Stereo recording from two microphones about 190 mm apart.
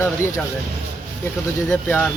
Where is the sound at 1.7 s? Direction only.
10° left (ahead or behind).